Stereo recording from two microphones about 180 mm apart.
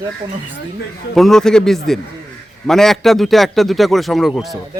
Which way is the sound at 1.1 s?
Centre (ahead or behind).